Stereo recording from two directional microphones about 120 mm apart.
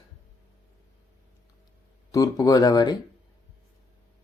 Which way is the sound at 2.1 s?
30° left (ahead or behind).